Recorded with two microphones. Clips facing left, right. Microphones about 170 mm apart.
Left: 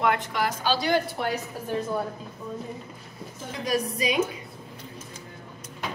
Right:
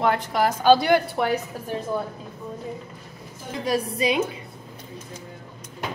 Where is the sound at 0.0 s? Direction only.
35° right (ahead or behind); by 1.3 s 60° right (ahead or behind).